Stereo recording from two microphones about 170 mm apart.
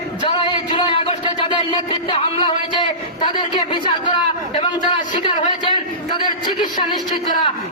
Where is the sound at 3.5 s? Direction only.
30° left (ahead or behind).